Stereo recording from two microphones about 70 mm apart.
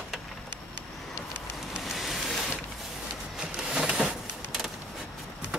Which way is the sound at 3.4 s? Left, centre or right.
Centre.